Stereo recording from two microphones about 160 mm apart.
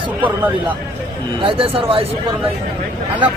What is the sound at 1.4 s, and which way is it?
Speech, 35° right (ahead or behind).